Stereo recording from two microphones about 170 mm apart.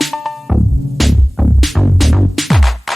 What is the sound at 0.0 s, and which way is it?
Music, centre (ahead or behind).